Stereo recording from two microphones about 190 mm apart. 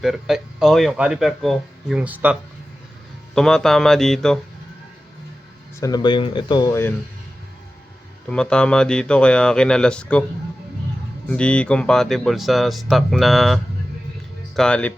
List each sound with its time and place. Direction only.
0.0 s a man's voice: centre (ahead or behind)
3.3 s a man's voice: 5° left (ahead or behind)
5.8 s speech: 20° left (ahead or behind)
8.3 s a man's voice: 5° left (ahead or behind)
11.3 s a man's voice: 5° left (ahead or behind)